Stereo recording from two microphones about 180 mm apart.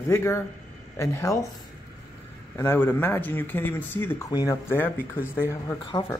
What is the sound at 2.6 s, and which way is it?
Speech, 15° left (ahead or behind).